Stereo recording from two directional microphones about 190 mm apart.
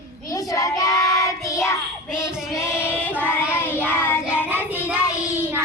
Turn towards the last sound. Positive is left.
turn(degrees=-10)  # may be behind; listen again after turning